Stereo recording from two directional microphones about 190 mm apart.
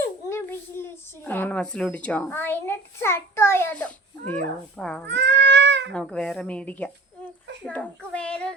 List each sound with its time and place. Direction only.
0.0 s a child's voice: 15° left (ahead or behind)
5.0 s speech: 65° right (ahead or behind)
5.9 s a child's voice: 5° left (ahead or behind)